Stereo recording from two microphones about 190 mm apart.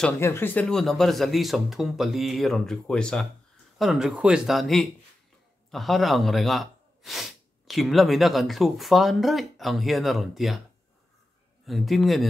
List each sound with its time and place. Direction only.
0.0 s speech: 10° left (ahead or behind)
11.6 s speech: centre (ahead or behind)